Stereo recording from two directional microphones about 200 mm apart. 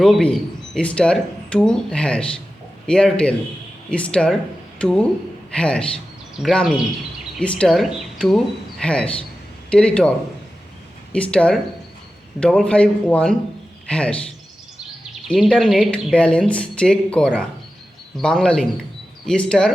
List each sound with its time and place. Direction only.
0.0 s a man's voice: 5° left (ahead or behind)
11.1 s speech: 5° left (ahead or behind)
15.3 s speech: centre (ahead or behind)